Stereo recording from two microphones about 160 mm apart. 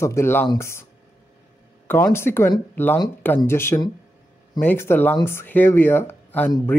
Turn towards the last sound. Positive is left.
turn(degrees=10)  # may be behind; listen again after turning